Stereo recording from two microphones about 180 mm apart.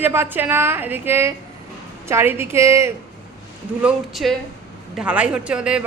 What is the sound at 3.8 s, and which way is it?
A woman's voice, centre (ahead or behind).